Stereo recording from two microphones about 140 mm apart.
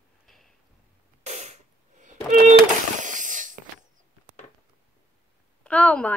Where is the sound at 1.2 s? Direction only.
55° right (ahead or behind).